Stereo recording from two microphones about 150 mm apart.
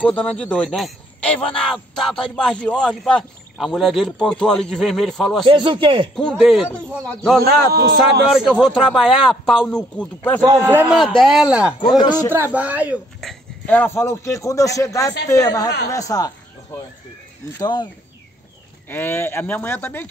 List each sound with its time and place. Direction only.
0.0 s a man's voice: 10° left (ahead or behind)
5.5 s speech: 35° right (ahead or behind)
6.1 s a man's voice: 5° left (ahead or behind)
7.4 s speech: 90° right
8.3 s a man's voice: centre (ahead or behind)
10.4 s a man's voice: 15° right (ahead or behind)
11.0 s a man's voice: centre (ahead or behind)
12.0 s a woman's voice: 25° left (ahead or behind)
12.3 s a man's voice: 10° right (ahead or behind)
13.2 s a woman's voice: 5° left (ahead or behind); by 16.3 s 25° left (ahead or behind)
17.6 s a woman's voice: 30° left (ahead or behind)
18.9 s speech: 15° left (ahead or behind)